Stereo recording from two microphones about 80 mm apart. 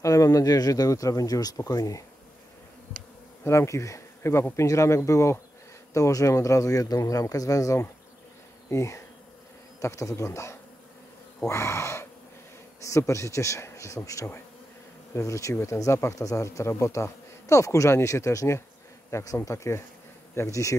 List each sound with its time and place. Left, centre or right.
0.0 s speech: left
3.4 s speech: left
8.6 s bee: left
9.8 s speech: left